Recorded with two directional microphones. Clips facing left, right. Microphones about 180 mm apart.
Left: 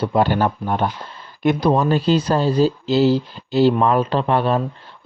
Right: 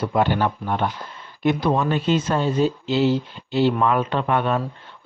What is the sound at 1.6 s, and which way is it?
Speech, 35° left (ahead or behind).